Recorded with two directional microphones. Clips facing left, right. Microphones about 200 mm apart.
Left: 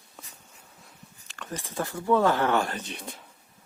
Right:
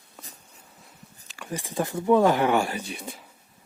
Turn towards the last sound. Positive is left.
turn(degrees=-10)  # may be behind; listen again after turning